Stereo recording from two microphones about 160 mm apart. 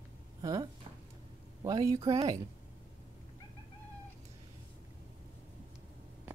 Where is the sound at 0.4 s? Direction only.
20° right (ahead or behind).